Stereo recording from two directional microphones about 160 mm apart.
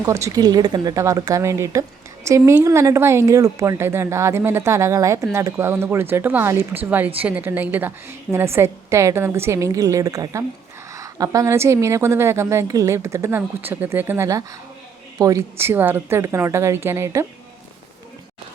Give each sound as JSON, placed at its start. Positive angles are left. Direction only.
{"t": 0.0, "sound": "speech", "side_deg": -20}